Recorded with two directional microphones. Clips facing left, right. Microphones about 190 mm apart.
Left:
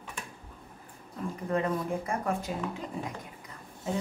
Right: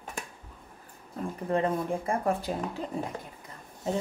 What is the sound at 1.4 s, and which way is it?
Speech, 30° right (ahead or behind).